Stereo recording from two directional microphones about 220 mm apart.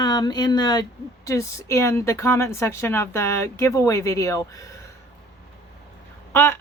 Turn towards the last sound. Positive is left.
turn(degrees=10)  # may be behind; listen again after turning